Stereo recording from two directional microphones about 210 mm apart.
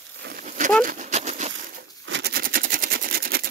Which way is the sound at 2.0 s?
55° right (ahead or behind).